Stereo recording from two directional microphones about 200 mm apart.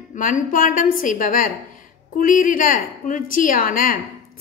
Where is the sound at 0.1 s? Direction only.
40° left (ahead or behind).